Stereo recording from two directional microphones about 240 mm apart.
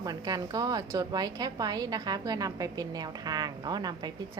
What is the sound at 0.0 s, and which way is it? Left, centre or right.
A woman's voice, centre.